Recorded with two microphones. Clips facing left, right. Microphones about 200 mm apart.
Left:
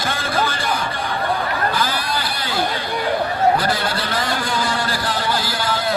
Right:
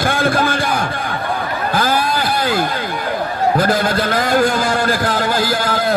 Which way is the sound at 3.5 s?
45° right (ahead or behind).